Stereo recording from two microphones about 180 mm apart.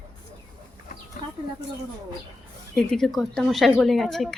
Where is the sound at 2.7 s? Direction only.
5° left (ahead or behind).